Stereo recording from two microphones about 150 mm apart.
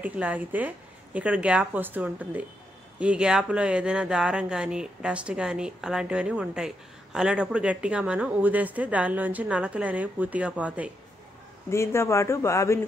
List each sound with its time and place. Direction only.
0.0 s speech: 10° right (ahead or behind)
11.7 s speech: 15° left (ahead or behind)